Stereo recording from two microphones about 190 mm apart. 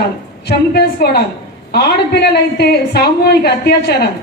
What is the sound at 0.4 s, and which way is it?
A woman's voice, 60° left (ahead or behind).